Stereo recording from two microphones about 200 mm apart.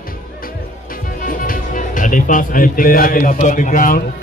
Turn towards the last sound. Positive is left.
turn(degrees=40)  # may be behind; listen again after turning